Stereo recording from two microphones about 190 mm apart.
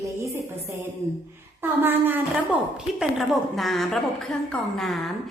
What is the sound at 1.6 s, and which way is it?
A woman's voice, 10° right (ahead or behind).